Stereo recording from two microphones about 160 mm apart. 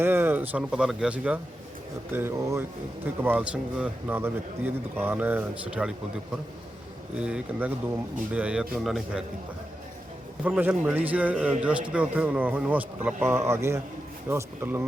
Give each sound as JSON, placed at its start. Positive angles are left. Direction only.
{"t": 0.0, "sound": "a man's voice", "side_deg": -15}
{"t": 7.2, "sound": "a man's voice", "side_deg": -5}
{"t": 10.4, "sound": "a man's voice", "side_deg": -10}